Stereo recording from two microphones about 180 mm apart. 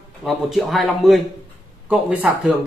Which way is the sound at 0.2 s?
Centre (ahead or behind).